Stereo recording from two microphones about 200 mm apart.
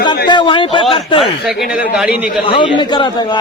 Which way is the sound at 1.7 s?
5° right (ahead or behind).